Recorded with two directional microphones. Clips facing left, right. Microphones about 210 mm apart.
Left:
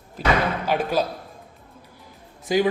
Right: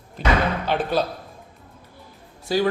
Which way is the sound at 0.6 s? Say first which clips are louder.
Even; 10° left (ahead or behind).